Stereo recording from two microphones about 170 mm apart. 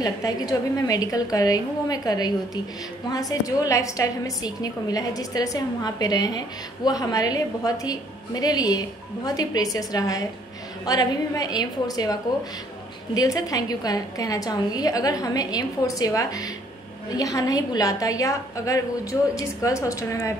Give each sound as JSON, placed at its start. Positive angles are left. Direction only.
{"t": 0.0, "sound": "a woman's voice", "side_deg": 20}